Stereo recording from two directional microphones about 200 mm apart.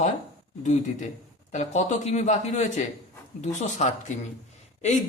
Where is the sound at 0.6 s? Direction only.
35° left (ahead or behind).